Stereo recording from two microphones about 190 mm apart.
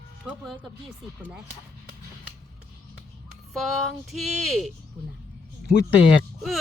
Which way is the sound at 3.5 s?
Centre (ahead or behind).